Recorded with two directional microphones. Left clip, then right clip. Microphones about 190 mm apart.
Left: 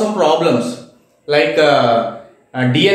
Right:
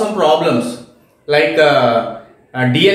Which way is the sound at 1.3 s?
15° left (ahead or behind).